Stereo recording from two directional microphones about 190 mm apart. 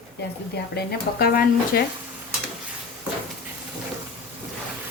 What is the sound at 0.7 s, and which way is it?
Speech, 55° left (ahead or behind).